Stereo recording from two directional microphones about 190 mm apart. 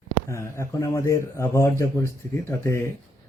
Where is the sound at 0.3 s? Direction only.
15° left (ahead or behind).